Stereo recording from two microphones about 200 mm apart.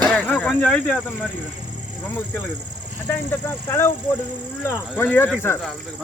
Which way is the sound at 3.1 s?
10° left (ahead or behind).